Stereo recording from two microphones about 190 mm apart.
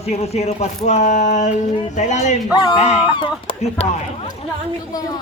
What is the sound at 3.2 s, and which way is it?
Speech, 30° left (ahead or behind).